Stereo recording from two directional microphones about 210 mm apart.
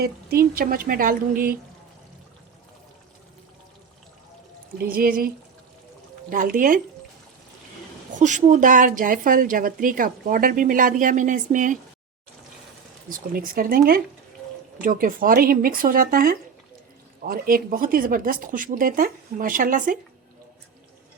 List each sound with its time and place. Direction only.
0.0 s speech: 45° right (ahead or behind)
4.8 s speech: 45° right (ahead or behind)
6.3 s speech: 40° right (ahead or behind)
8.2 s speech: 35° right (ahead or behind)
13.1 s speech: 40° right (ahead or behind)